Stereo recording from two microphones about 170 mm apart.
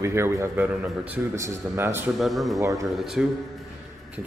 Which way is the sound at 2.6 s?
20° right (ahead or behind).